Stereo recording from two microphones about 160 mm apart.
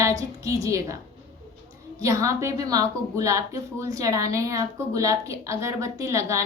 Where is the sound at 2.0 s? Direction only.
20° right (ahead or behind).